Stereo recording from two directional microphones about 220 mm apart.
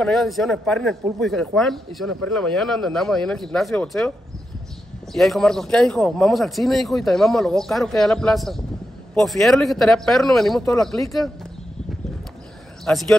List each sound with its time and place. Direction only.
0.0 s speech: centre (ahead or behind)
5.1 s speech: centre (ahead or behind)
12.9 s speech: 5° left (ahead or behind)